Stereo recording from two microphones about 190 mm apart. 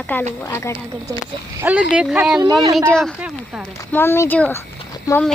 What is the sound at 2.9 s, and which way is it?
Speech, 5° left (ahead or behind).